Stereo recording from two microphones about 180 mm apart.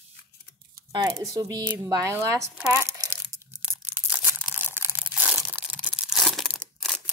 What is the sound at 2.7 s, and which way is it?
Crumpling, 15° right (ahead or behind).